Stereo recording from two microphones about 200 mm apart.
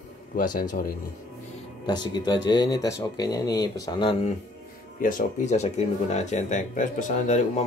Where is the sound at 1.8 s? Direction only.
20° left (ahead or behind).